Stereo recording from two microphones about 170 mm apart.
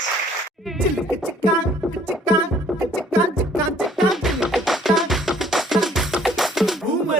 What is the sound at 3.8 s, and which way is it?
Music, centre (ahead or behind).